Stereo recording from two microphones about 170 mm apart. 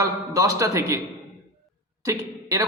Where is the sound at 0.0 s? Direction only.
20° right (ahead or behind).